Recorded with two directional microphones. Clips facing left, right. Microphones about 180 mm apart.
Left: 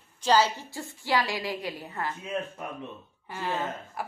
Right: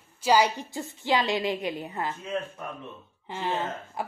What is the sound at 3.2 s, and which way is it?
Speech, 20° right (ahead or behind).